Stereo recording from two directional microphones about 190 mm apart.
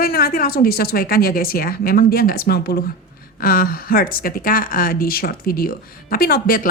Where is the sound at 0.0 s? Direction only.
50° left (ahead or behind).